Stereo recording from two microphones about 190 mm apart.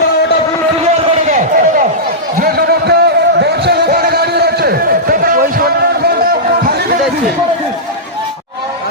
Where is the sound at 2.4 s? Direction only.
55° right (ahead or behind).